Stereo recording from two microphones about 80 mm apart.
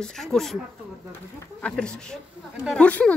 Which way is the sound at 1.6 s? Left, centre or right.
Centre.